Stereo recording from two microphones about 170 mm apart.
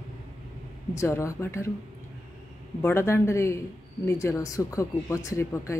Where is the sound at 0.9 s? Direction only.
15° left (ahead or behind).